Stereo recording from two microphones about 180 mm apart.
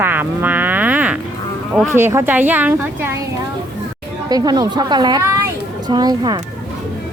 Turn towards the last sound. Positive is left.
turn(degrees=-20)  # may be behind; listen again after turning